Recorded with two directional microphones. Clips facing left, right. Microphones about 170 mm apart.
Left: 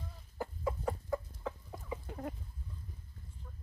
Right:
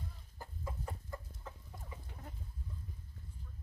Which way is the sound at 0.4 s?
75° left (ahead or behind).